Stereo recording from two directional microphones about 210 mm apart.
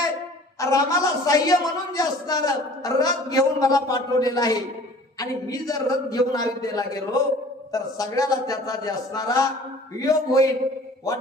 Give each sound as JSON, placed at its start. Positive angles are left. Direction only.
{"t": 0.6, "sound": "a woman's voice", "side_deg": 15}